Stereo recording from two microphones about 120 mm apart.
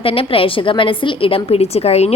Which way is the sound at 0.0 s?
50° left (ahead or behind).